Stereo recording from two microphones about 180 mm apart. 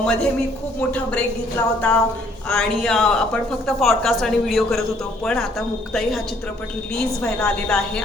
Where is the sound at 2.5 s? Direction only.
5° left (ahead or behind).